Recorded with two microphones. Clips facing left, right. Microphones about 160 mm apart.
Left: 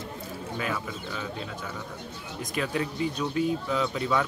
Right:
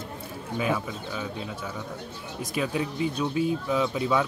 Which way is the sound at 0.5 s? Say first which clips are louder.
Right 5 dB; 10° right (ahead or behind).